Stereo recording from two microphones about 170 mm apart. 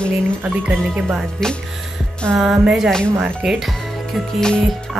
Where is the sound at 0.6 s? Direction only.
10° right (ahead or behind).